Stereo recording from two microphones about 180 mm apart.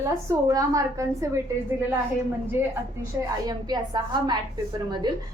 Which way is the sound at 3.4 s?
20° right (ahead or behind).